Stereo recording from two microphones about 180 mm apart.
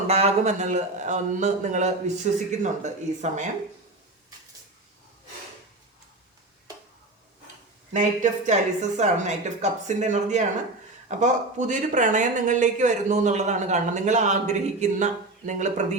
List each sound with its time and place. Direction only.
0.1 s speech: 35° right (ahead or behind)
7.9 s speech: 40° right (ahead or behind)